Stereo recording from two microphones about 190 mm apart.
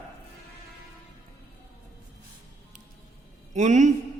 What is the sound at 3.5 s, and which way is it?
Speech, 40° right (ahead or behind).